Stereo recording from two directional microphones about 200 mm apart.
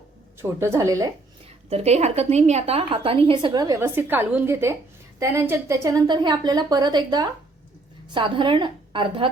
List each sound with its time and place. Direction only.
0.6 s a woman's voice: 15° right (ahead or behind)
1.7 s a woman's voice: 35° right (ahead or behind)